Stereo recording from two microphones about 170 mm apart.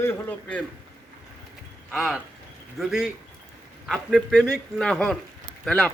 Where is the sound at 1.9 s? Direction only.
Centre (ahead or behind).